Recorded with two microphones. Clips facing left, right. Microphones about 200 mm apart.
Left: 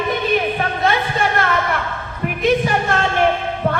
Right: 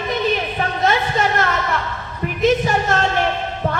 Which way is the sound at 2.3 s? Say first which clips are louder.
Even; 55° left (ahead or behind).